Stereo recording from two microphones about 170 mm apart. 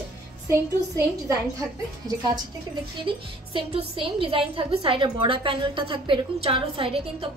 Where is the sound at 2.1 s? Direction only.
20° right (ahead or behind).